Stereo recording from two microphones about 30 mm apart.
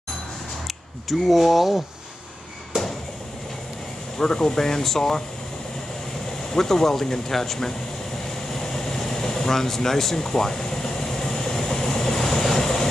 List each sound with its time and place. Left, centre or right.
1.0 s speech: centre
4.2 s speech: left
6.5 s speech: centre
8.5 s air conditioning: centre